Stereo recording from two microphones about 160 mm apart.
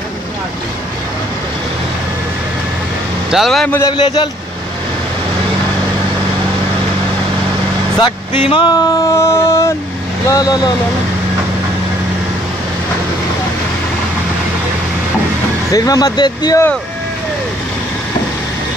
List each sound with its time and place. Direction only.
3.3 s a man's voice: centre (ahead or behind)
3.7 s speech: 25° left (ahead or behind)
8.0 s speech: 30° left (ahead or behind)
15.7 s speech: 20° left (ahead or behind)